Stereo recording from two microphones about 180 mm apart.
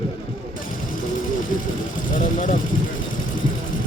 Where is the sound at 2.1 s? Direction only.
45° left (ahead or behind).